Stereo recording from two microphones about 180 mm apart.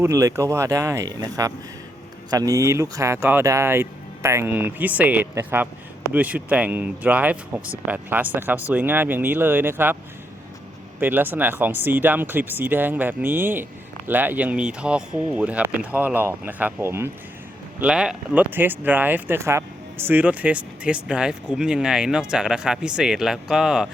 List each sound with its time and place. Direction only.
0.0 s speech: 15° right (ahead or behind)
11.0 s speech: 10° right (ahead or behind)